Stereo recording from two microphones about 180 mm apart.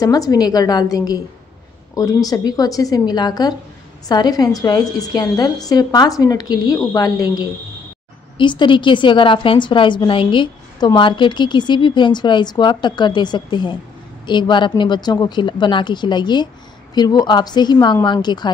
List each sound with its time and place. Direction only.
0.0 s a woman's voice: 20° left (ahead or behind)